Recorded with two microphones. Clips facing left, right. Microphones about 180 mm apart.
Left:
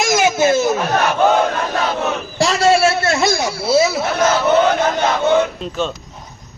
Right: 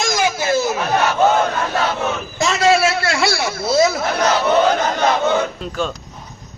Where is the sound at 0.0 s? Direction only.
20° left (ahead or behind).